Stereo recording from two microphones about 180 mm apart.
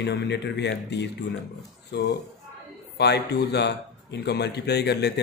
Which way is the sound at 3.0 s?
70° left (ahead or behind).